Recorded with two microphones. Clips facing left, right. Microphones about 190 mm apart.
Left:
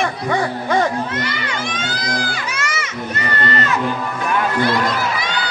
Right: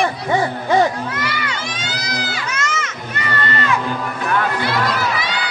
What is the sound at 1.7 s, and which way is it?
Crowd, 50° left (ahead or behind).